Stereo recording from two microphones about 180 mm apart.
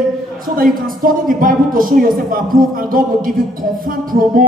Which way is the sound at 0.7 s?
50° right (ahead or behind).